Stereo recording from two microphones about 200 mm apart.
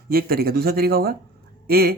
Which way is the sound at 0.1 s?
50° right (ahead or behind).